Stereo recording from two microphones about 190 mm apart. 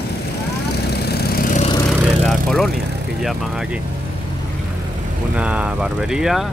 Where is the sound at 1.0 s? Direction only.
55° left (ahead or behind).